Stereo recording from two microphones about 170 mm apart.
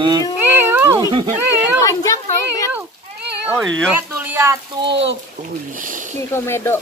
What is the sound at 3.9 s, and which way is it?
Speech, 10° right (ahead or behind).